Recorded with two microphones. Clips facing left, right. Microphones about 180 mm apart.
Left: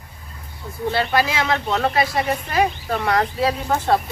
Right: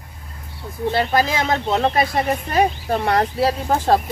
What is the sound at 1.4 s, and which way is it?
Speech, 20° right (ahead or behind).